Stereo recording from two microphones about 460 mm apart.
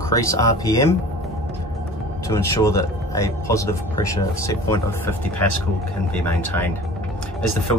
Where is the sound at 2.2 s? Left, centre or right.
Centre.